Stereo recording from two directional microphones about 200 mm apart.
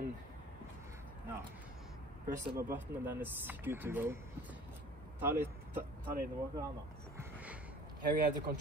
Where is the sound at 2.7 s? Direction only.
10° right (ahead or behind).